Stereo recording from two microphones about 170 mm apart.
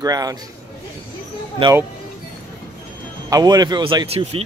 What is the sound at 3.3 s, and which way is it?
Speech, 25° right (ahead or behind).